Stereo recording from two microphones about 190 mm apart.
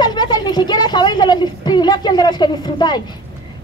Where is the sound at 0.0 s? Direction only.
20° left (ahead or behind).